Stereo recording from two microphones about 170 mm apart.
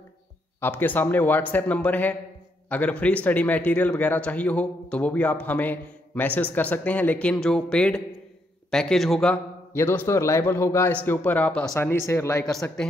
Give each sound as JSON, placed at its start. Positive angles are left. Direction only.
{"t": 0.6, "sound": "a man's voice", "side_deg": 10}
{"t": 9.8, "sound": "a man's voice", "side_deg": 15}
{"t": 12.4, "sound": "a man's voice", "side_deg": 5}